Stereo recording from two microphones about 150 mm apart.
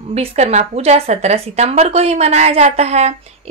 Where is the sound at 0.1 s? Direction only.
45° right (ahead or behind).